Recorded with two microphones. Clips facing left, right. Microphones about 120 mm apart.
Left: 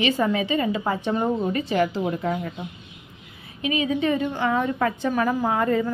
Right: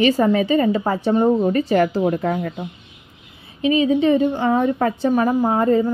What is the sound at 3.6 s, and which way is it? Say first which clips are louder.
A woman's voice: right 7 dB; 30° right (ahead or behind).